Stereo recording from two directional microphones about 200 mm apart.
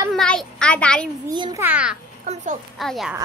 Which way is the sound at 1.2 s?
20° right (ahead or behind).